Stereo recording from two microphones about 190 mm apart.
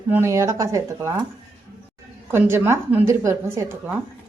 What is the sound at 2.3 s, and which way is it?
Speech, 10° right (ahead or behind).